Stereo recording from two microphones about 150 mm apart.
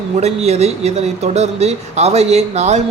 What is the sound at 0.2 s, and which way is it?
Speech, 45° right (ahead or behind).